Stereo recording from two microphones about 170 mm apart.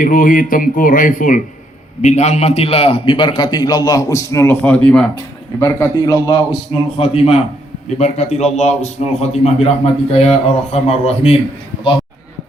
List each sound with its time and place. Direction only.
0.0 s a man's voice: 55° left (ahead or behind); by 5.0 s 5° left (ahead or behind)
5.5 s a man's voice: 15° left (ahead or behind)
6.9 s a man's voice: 35° left (ahead or behind)